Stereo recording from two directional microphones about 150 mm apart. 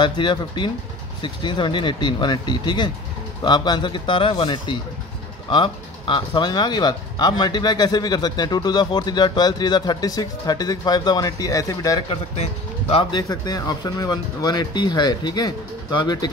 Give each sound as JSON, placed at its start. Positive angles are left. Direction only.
{"t": 0.0, "sound": "speech", "side_deg": 30}
{"t": 12.1, "sound": "speech", "side_deg": 40}
{"t": 13.1, "sound": "speech", "side_deg": 25}